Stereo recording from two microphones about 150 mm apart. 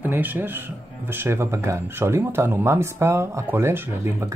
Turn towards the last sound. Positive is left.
turn(degrees=-15)  # may be behind; listen again after turning